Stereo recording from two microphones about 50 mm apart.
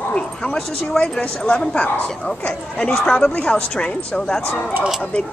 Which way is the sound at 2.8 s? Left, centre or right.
Centre.